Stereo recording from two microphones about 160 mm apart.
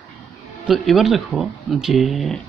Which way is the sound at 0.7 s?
Centre (ahead or behind).